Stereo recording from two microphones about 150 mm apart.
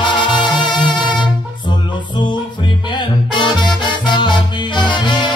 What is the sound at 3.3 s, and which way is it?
Music, 30° left (ahead or behind).